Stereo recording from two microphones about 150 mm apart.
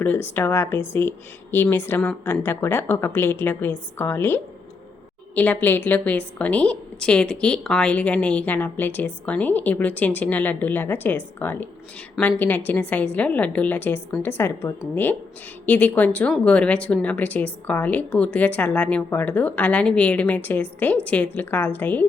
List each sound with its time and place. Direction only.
0.0 s a woman's voice: 15° left (ahead or behind)